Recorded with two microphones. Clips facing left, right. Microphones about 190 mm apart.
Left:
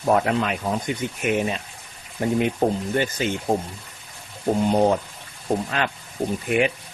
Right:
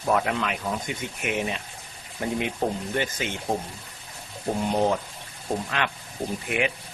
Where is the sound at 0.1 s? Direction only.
35° left (ahead or behind).